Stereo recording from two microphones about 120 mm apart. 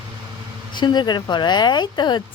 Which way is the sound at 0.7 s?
40° left (ahead or behind).